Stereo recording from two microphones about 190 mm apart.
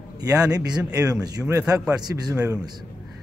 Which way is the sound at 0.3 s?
20° right (ahead or behind).